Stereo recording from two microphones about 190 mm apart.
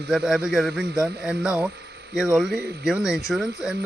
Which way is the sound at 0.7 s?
60° right (ahead or behind).